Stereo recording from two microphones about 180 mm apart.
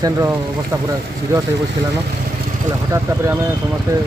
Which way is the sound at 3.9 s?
15° right (ahead or behind).